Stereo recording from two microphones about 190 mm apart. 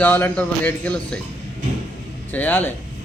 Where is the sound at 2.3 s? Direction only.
10° left (ahead or behind).